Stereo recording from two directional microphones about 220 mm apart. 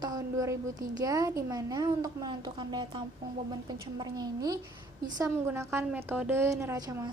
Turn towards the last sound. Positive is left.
turn(degrees=-15)  # may be behind; listen again after turning